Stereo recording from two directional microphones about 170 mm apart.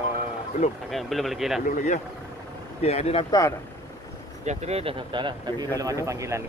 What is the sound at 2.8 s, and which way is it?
Speech, 40° left (ahead or behind).